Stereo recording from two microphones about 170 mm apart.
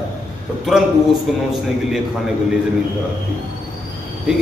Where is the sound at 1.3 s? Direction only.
Centre (ahead or behind).